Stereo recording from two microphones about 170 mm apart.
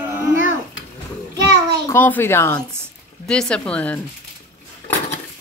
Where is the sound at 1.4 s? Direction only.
20° right (ahead or behind).